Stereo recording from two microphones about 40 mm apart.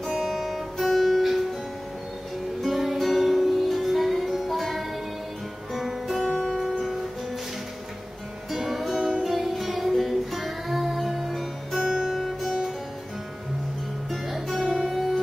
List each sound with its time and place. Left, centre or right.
0.1 s music: centre
2.6 s music: centre
8.5 s music: centre
8.9 s music: centre
9.2 s music: centre
14.1 s music: centre